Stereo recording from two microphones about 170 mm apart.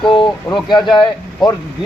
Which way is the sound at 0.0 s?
30° left (ahead or behind).